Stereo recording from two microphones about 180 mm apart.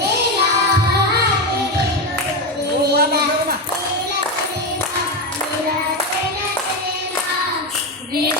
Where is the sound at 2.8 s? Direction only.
65° right (ahead or behind).